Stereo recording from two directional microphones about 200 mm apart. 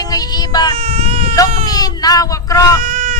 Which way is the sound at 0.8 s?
30° right (ahead or behind).